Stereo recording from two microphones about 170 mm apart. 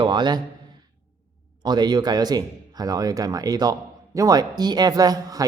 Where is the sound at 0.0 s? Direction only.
25° right (ahead or behind).